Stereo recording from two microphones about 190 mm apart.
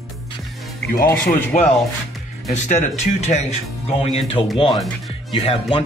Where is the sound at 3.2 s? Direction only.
35° left (ahead or behind).